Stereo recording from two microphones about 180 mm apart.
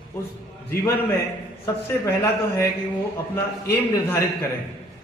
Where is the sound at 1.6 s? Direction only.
15° left (ahead or behind).